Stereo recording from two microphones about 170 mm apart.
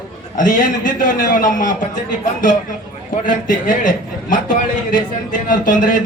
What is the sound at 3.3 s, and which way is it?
Speech, 50° left (ahead or behind).